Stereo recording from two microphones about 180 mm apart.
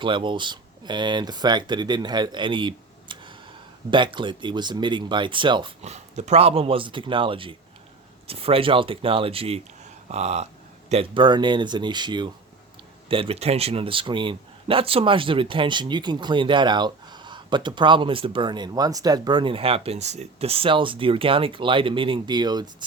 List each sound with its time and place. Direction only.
0.0 s speech: 25° right (ahead or behind)